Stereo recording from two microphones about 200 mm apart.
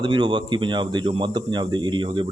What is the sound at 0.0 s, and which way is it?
A man's voice, 25° right (ahead or behind).